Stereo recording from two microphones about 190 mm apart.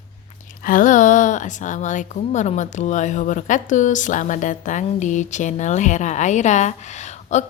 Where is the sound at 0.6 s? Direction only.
45° left (ahead or behind).